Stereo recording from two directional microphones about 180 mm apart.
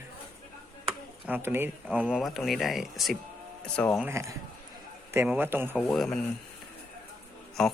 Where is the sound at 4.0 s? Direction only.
15° right (ahead or behind).